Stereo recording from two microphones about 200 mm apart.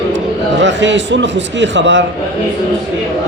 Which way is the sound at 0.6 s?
65° right (ahead or behind).